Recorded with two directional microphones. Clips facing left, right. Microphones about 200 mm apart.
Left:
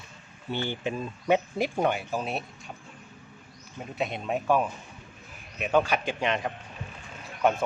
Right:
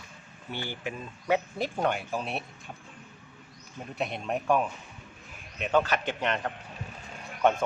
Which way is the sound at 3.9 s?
Centre (ahead or behind).